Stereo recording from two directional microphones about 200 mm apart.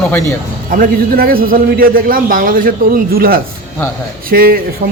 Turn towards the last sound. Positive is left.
turn(degrees=-50)  # may be behind; listen again after turning